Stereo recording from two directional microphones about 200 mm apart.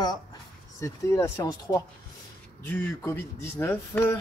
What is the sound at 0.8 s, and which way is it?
Speech, 15° left (ahead or behind).